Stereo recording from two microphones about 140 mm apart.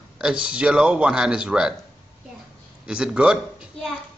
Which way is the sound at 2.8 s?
5° right (ahead or behind).